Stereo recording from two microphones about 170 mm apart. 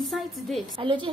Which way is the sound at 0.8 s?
30° right (ahead or behind).